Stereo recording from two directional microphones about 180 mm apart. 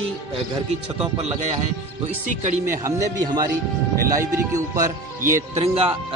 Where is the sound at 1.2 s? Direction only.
40° right (ahead or behind).